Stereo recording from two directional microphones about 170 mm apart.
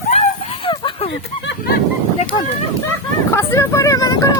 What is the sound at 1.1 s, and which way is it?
Speech, 90° left.